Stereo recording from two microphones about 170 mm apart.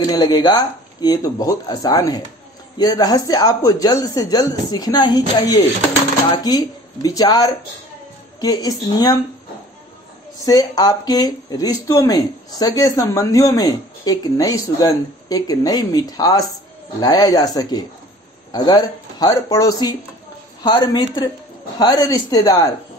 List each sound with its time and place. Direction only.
0.0 s speech: 25° left (ahead or behind)
6.3 s speech: 25° left (ahead or behind)
10.4 s speech: 20° left (ahead or behind)